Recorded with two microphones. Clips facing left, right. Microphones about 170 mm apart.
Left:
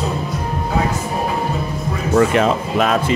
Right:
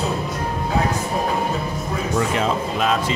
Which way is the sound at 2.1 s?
65° left (ahead or behind).